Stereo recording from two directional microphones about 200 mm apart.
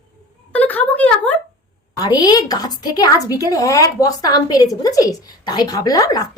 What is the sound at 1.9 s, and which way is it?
A woman's voice, 20° left (ahead or behind).